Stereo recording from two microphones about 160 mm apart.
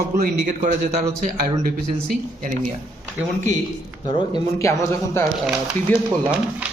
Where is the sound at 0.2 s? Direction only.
50° right (ahead or behind).